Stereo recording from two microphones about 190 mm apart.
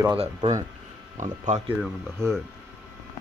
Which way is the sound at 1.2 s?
40° right (ahead or behind).